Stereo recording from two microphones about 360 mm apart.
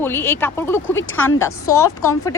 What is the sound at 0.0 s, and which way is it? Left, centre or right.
Speech, centre.